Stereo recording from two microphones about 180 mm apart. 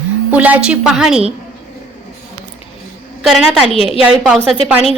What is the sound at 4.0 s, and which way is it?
Speech, 5° right (ahead or behind).